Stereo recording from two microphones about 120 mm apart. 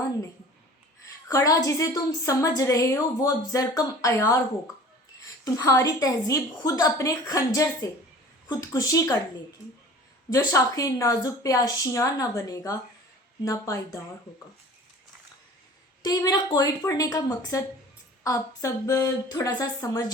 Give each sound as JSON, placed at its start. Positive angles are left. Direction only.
{"t": 1.3, "sound": "a woman's voice", "side_deg": 25}
{"t": 5.5, "sound": "a woman's voice", "side_deg": 25}
{"t": 10.3, "sound": "a woman's voice", "side_deg": 30}
{"t": 16.0, "sound": "a woman's voice", "side_deg": 35}